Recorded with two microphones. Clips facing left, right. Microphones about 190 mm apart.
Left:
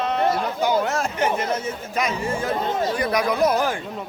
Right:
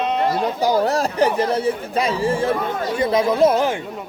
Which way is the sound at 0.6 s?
35° right (ahead or behind).